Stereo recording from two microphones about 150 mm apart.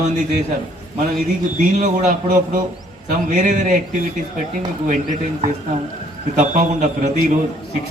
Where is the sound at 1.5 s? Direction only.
55° right (ahead or behind).